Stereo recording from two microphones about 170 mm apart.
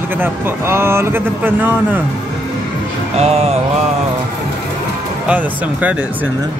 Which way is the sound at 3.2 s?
40° right (ahead or behind).